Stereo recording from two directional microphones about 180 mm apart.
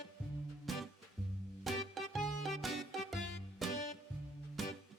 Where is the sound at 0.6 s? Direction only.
Centre (ahead or behind).